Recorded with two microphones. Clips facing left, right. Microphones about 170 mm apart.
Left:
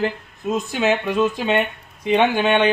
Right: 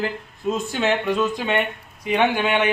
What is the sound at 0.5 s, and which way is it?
Speech, 15° left (ahead or behind).